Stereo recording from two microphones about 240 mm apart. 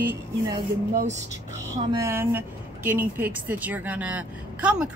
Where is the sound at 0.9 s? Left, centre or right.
Right.